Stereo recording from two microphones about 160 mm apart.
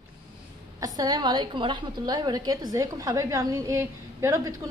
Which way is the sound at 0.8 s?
25° right (ahead or behind).